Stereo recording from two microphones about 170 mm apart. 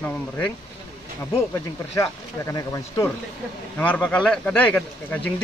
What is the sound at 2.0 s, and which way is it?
Speech, 20° left (ahead or behind).